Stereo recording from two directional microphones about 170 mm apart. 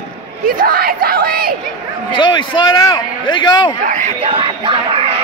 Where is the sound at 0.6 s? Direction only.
60° right (ahead or behind).